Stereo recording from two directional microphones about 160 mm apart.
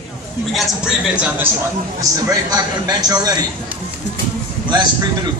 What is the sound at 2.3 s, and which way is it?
A man's voice, 25° right (ahead or behind).